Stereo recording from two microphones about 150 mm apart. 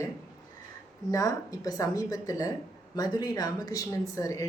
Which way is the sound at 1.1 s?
25° left (ahead or behind).